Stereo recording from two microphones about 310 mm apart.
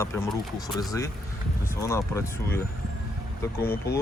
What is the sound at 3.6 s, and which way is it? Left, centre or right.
Speech, left.